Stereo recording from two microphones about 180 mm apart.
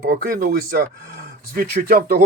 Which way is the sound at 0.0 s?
55° right (ahead or behind).